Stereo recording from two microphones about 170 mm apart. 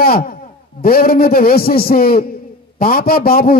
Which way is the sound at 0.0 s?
60° left (ahead or behind).